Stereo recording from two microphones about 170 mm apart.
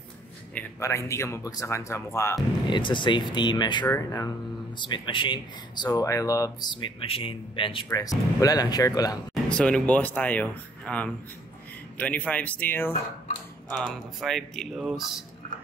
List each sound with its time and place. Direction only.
0.6 s speech: 15° left (ahead or behind)
2.7 s speech: 30° left (ahead or behind)
4.7 s speech: 25° left (ahead or behind)
9.3 s speech: 5° left (ahead or behind)